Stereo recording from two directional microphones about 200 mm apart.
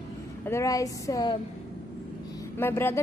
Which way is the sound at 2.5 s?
10° left (ahead or behind).